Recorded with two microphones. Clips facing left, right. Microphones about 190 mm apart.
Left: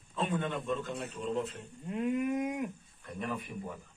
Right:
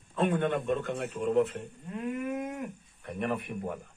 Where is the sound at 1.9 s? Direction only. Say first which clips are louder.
Left 2 dB; 15° left (ahead or behind).